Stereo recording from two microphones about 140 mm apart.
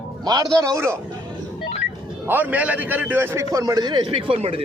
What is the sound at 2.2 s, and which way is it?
A man's voice, 15° right (ahead or behind).